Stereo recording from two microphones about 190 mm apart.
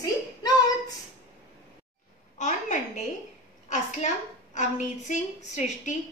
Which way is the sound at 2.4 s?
40° left (ahead or behind).